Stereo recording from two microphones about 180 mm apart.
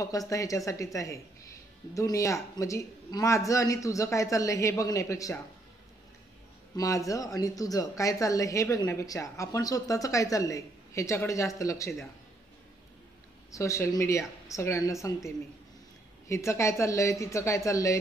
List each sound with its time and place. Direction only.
0.3 s speech: 20° left (ahead or behind)
6.8 s speech: 20° left (ahead or behind)
13.5 s speech: 15° left (ahead or behind)
16.3 s speech: 15° left (ahead or behind)